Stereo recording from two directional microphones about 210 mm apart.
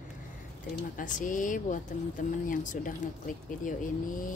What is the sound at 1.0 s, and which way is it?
Speech, 40° left (ahead or behind).